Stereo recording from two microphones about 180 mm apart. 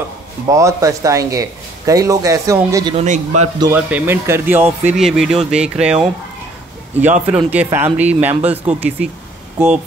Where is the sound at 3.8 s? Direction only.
10° right (ahead or behind).